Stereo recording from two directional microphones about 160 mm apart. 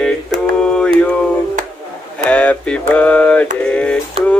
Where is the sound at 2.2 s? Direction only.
10° left (ahead or behind).